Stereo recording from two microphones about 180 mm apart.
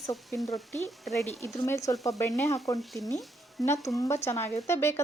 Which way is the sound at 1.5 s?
15° left (ahead or behind).